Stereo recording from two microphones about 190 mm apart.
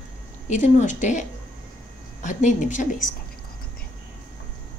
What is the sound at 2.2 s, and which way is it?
Speech, 40° left (ahead or behind).